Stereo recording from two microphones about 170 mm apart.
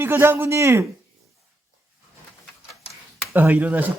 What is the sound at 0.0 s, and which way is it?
Speech, 15° right (ahead or behind).